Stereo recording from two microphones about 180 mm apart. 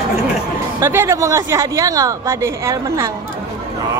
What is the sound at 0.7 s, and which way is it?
A woman's voice, 15° right (ahead or behind).